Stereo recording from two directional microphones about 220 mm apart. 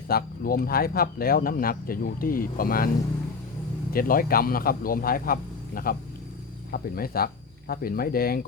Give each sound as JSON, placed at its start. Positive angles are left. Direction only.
{"t": 0.1, "sound": "speech", "side_deg": 45}
{"t": 3.9, "sound": "speech", "side_deg": 40}